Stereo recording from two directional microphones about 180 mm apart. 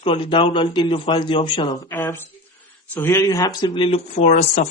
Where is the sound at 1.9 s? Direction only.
15° left (ahead or behind).